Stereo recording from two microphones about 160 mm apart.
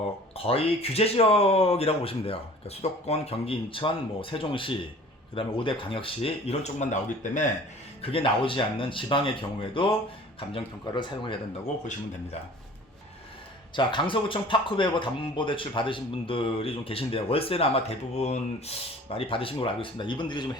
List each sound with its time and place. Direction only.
0.3 s speech: 35° left (ahead or behind)
8.0 s speech: 35° left (ahead or behind)
13.7 s speech: 30° left (ahead or behind)